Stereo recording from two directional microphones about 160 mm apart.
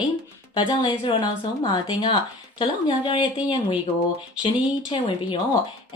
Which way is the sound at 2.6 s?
30° left (ahead or behind).